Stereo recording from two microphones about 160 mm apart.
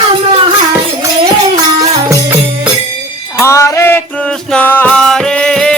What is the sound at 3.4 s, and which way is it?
Music, 20° left (ahead or behind).